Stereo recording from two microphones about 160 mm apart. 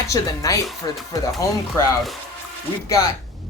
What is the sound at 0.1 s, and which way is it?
Speech, 20° left (ahead or behind).